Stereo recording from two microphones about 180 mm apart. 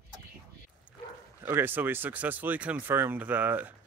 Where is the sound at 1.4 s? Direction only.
10° right (ahead or behind).